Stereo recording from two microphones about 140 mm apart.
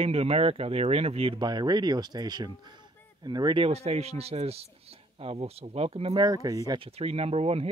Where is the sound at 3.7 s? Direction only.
50° right (ahead or behind).